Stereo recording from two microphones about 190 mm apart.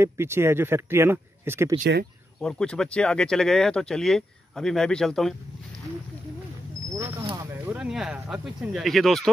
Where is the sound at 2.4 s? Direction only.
5° left (ahead or behind).